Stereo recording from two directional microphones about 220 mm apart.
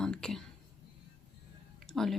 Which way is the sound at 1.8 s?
Centre (ahead or behind).